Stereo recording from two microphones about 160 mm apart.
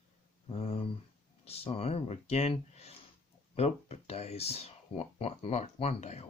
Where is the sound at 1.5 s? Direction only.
40° left (ahead or behind).